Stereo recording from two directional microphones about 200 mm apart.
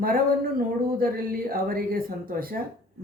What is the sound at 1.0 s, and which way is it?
Speech, 45° right (ahead or behind).